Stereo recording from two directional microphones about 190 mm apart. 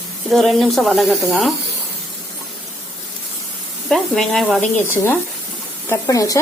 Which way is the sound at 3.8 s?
Centre (ahead or behind).